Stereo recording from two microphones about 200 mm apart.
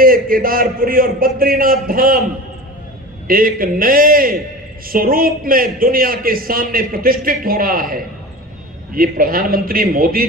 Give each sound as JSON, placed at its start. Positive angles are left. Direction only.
{"t": 0.0, "sound": "a man's voice", "side_deg": -45}
{"t": 3.3, "sound": "a man's voice", "side_deg": -45}